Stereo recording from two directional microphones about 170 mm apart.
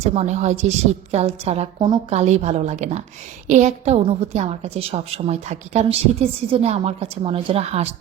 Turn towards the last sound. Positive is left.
turn(degrees=-35)  # may be behind; listen again after turning